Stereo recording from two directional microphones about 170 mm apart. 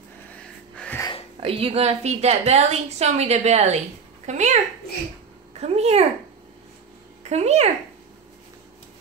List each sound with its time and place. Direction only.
0.3 s wheeze: 5° left (ahead or behind)
1.4 s a woman's voice: 35° right (ahead or behind)
5.6 s a woman's voice: 40° right (ahead or behind)
7.2 s a woman's voice: 40° right (ahead or behind)